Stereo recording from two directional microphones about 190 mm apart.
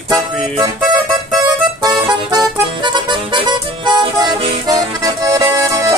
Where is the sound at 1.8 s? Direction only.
20° right (ahead or behind).